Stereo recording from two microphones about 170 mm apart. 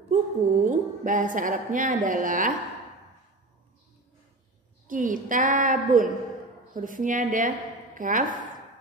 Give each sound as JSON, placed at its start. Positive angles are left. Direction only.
{"t": 0.1, "sound": "a woman's voice", "side_deg": -50}
{"t": 4.8, "sound": "a woman's voice", "side_deg": -50}